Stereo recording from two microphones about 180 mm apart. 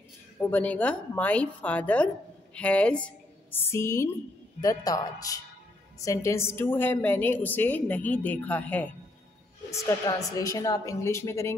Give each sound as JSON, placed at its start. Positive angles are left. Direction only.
{"t": 0.4, "sound": "a woman's voice", "side_deg": 10}